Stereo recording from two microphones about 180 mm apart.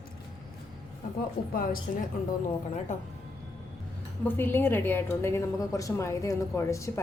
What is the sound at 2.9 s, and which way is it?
Speech, 45° left (ahead or behind).